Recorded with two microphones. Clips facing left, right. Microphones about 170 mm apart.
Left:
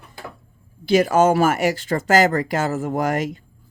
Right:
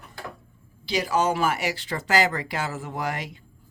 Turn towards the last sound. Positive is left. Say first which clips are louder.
# left 9 dB
turn(degrees=45)  # may be behind; listen again after turning